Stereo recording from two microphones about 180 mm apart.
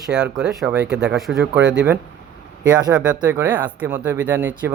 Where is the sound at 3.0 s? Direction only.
10° right (ahead or behind).